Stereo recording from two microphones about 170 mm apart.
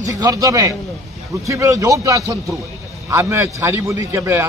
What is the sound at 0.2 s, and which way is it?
A man's voice, 20° right (ahead or behind).